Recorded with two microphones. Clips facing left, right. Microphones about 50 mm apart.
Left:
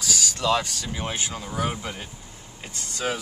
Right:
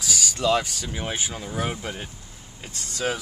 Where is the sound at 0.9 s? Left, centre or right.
Centre.